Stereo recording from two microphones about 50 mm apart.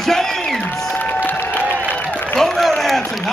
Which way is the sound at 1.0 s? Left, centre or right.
Left.